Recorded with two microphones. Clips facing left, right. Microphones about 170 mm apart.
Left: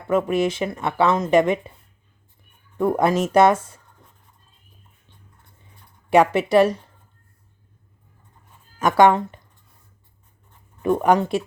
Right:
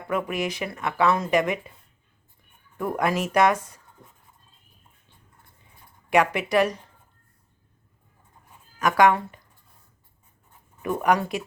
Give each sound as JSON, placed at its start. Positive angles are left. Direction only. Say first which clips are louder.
{"t": 0.1, "sound": "speech", "louder": "left 7 dB", "side_deg": 25}
{"t": 2.7, "sound": "speech", "louder": "left 6 dB", "side_deg": 30}
{"t": 6.1, "sound": "speech", "louder": "left 5 dB", "side_deg": 30}
{"t": 8.8, "sound": "speech", "louder": "left 4 dB", "side_deg": 25}
{"t": 10.8, "sound": "speech", "louder": "left 5 dB", "side_deg": 25}